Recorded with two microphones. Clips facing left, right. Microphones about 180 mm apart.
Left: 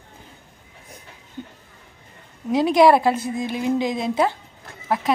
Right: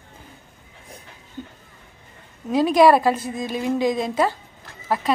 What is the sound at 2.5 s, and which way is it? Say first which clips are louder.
Speech: even; 15° left (ahead or behind).